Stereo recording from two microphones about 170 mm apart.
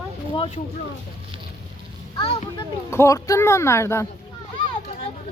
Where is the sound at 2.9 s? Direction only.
15° left (ahead or behind).